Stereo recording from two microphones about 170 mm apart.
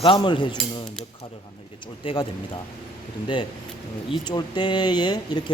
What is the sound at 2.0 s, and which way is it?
Speech, 30° left (ahead or behind).